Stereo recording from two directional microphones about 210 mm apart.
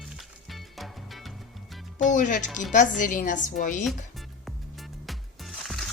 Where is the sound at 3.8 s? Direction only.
Centre (ahead or behind).